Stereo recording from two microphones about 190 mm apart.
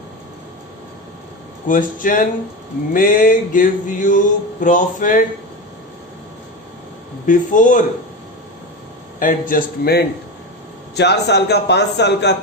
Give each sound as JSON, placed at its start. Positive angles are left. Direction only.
{"t": 1.6, "sound": "male singing", "side_deg": 45}
{"t": 7.3, "sound": "male singing", "side_deg": 40}
{"t": 9.1, "sound": "male singing", "side_deg": 45}
{"t": 10.9, "sound": "a man's voice", "side_deg": 60}